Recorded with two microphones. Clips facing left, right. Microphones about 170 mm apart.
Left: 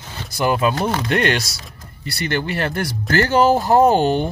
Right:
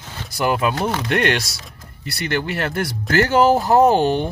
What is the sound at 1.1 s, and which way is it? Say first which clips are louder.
Speech: even; 60° right (ahead or behind).